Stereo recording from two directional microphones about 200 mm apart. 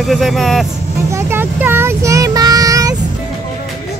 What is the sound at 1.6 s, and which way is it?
Child singing, 10° right (ahead or behind).